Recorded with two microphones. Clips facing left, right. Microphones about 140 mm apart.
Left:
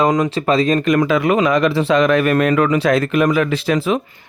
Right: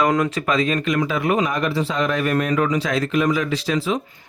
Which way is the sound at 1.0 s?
90° left.